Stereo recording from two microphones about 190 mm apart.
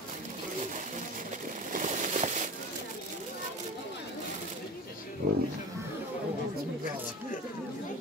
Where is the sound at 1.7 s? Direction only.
40° right (ahead or behind).